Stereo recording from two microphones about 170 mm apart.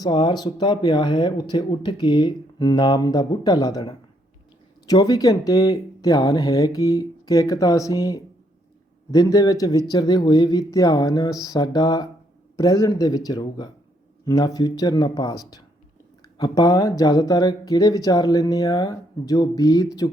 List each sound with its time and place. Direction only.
0.0 s speech: 25° left (ahead or behind)